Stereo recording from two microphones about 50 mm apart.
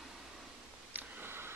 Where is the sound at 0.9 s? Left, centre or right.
Right.